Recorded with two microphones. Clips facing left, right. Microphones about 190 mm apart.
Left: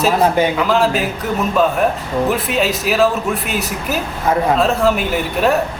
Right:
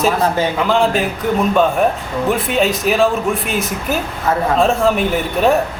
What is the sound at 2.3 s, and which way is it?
Speech, 5° left (ahead or behind).